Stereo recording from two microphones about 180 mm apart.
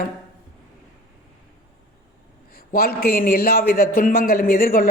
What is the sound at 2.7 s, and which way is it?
A woman's voice, 55° left (ahead or behind).